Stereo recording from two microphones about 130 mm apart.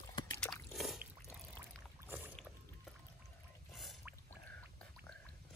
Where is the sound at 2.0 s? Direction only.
15° right (ahead or behind).